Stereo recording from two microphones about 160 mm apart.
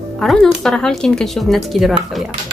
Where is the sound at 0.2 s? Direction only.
Centre (ahead or behind).